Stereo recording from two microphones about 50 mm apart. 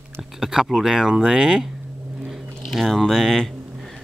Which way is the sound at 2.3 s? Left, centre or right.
Centre.